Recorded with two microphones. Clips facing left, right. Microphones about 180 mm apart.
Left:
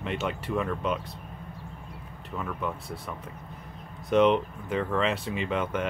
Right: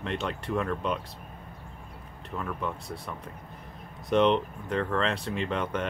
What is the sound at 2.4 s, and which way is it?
Speech, centre (ahead or behind).